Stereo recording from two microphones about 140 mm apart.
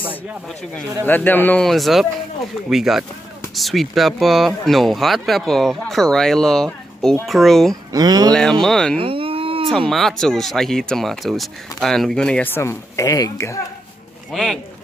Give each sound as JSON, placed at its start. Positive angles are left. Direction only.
{"t": 1.0, "sound": "speech", "side_deg": 15}
{"t": 7.9, "sound": "speech", "side_deg": -25}
{"t": 8.3, "sound": "speech", "side_deg": 5}
{"t": 8.9, "sound": "a sound", "side_deg": -40}
{"t": 9.7, "sound": "speech", "side_deg": 5}
{"t": 14.3, "sound": "speech", "side_deg": 0}